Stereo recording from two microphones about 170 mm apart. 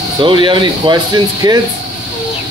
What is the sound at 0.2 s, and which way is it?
Speech, 30° right (ahead or behind).